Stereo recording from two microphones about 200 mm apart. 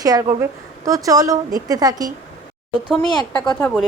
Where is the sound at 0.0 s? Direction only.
20° right (ahead or behind).